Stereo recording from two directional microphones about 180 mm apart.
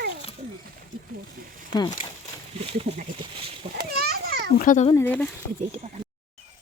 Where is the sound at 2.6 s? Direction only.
35° right (ahead or behind).